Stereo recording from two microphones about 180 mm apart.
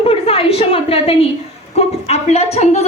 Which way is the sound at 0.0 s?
30° left (ahead or behind).